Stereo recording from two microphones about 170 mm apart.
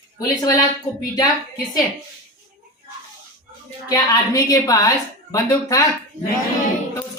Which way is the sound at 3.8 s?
20° left (ahead or behind).